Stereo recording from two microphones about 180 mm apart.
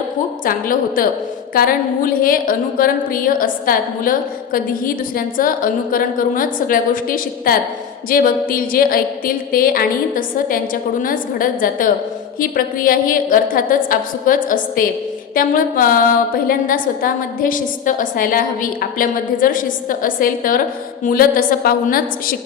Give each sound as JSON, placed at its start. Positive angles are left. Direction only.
{"t": 0.4, "sound": "a woman's voice", "side_deg": 50}